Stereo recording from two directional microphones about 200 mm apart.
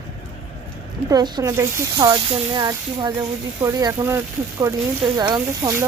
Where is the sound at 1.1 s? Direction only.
15° right (ahead or behind).